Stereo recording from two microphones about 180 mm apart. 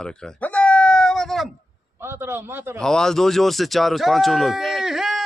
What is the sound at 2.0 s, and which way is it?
Speech, 15° right (ahead or behind).